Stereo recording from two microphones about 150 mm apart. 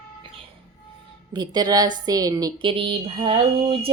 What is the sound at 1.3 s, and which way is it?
A woman's voice, 30° right (ahead or behind).